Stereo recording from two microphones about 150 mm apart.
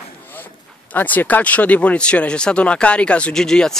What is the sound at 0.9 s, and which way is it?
Speech, 10° left (ahead or behind).